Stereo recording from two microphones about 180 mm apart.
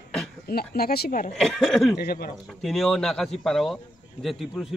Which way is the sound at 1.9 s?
60° left (ahead or behind).